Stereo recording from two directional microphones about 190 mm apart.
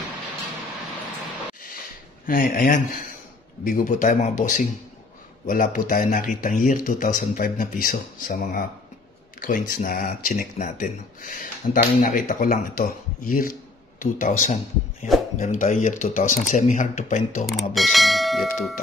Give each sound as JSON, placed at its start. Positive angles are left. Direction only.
{"t": 2.2, "sound": "speech", "side_deg": 50}
{"t": 17.5, "sound": "bell", "side_deg": 0}